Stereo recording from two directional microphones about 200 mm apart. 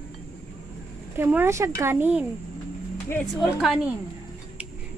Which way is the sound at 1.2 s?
10° right (ahead or behind).